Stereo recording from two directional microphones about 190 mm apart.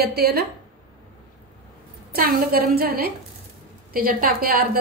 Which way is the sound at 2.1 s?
50° right (ahead or behind).